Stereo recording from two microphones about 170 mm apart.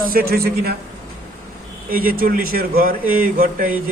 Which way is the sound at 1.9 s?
55° right (ahead or behind).